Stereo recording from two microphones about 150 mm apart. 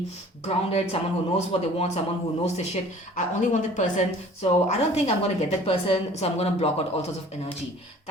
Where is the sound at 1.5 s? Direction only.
45° left (ahead or behind).